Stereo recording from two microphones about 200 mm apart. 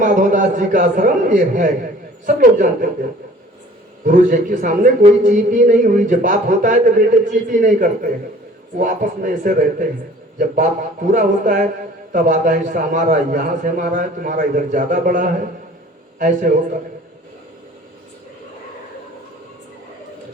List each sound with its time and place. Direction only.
0.0 s a man's voice: 40° right (ahead or behind)
4.0 s a man's voice: 40° right (ahead or behind)